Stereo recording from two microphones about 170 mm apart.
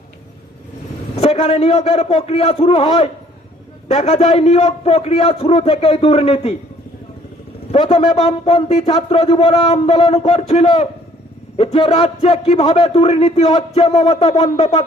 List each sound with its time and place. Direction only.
1.1 s a man's voice: 35° left (ahead or behind)
7.7 s a man's voice: 35° left (ahead or behind)